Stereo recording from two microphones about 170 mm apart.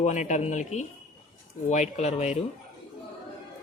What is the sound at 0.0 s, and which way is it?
Speech, 45° left (ahead or behind).